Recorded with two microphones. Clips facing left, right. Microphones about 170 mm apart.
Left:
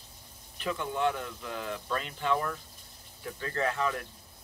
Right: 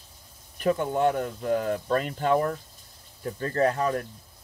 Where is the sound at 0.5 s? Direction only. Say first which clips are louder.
Right 8 dB; 45° right (ahead or behind).